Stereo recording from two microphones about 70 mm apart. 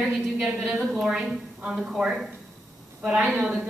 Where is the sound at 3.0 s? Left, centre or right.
Centre.